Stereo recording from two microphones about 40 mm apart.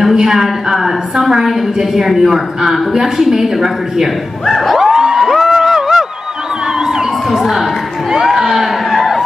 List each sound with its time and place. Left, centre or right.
0.1 s a woman's voice: centre
4.7 s a sound: centre
6.8 s children shouting: centre
7.2 s a woman's voice: centre
8.1 s music: centre